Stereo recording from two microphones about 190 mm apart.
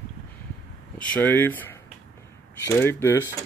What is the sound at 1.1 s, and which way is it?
Speech, 10° left (ahead or behind).